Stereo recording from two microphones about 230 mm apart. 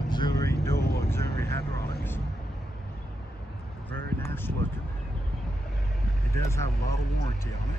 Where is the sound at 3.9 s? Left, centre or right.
Centre.